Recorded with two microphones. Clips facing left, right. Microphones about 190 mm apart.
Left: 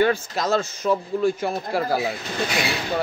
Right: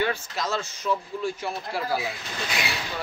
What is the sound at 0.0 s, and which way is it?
Speech, 45° left (ahead or behind).